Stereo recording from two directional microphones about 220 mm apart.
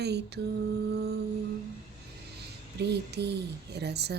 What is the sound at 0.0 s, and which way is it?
Mantra, 50° right (ahead or behind).